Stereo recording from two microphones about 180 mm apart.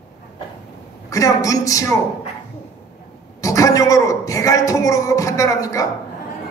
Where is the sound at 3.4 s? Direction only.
20° left (ahead or behind).